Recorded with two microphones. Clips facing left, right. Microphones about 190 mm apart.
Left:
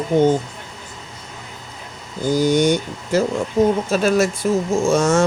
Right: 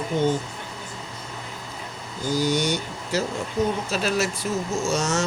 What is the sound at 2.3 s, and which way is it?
Speech, 50° left (ahead or behind).